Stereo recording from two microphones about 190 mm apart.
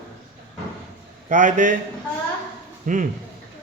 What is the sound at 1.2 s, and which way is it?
Speech, 45° right (ahead or behind).